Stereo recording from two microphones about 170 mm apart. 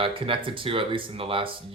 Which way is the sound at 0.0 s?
30° right (ahead or behind).